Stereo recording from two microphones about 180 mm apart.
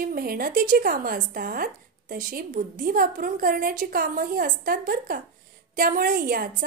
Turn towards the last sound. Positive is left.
turn(degrees=-50)  # may be behind; listen again after turning